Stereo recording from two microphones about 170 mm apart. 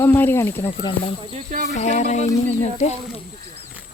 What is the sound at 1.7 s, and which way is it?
Speech, 40° left (ahead or behind).